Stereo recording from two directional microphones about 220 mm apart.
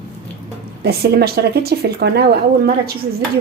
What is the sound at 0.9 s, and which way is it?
Speech, 45° right (ahead or behind).